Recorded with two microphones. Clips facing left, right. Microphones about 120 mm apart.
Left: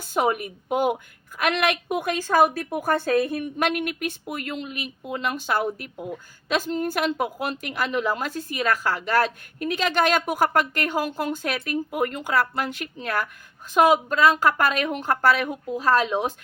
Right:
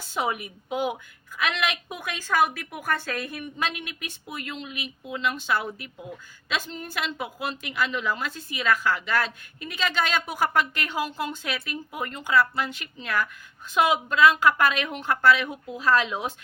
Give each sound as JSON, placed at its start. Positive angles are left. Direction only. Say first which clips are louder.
{"t": 0.1, "sound": "a woman's voice", "louder": "left 5 dB", "side_deg": 50}
{"t": 2.0, "sound": "speech", "louder": "left 4 dB", "side_deg": 40}
{"t": 3.6, "sound": "a woman's voice", "louder": "left 7 dB", "side_deg": 55}